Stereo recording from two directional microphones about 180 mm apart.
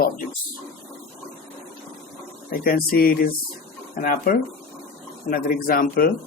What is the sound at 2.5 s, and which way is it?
Speech, 55° left (ahead or behind).